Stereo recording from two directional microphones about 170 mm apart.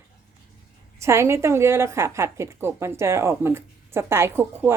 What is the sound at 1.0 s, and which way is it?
A woman's voice, 15° right (ahead or behind).